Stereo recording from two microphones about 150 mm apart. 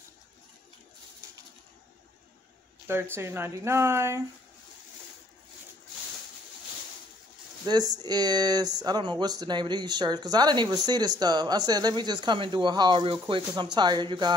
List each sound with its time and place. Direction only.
2.9 s speech: 15° right (ahead or behind)
7.6 s speech: 25° right (ahead or behind)